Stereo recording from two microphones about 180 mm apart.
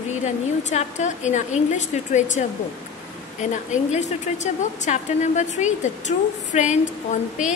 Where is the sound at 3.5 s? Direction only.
40° left (ahead or behind).